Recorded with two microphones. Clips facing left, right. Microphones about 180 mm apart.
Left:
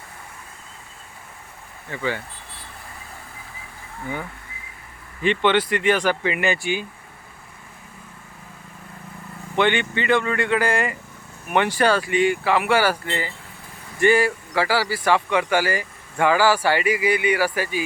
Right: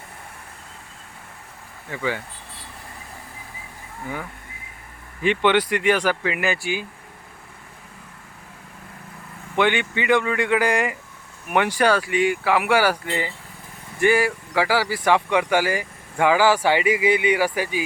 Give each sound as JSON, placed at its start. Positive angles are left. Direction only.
{"t": 1.9, "sound": "speech", "side_deg": -10}
{"t": 5.2, "sound": "speech", "side_deg": -10}
{"t": 9.6, "sound": "speech", "side_deg": -10}